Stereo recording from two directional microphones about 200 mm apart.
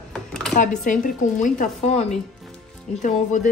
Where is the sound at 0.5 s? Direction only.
40° left (ahead or behind).